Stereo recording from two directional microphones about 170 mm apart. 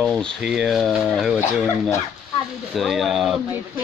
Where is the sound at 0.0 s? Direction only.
5° left (ahead or behind).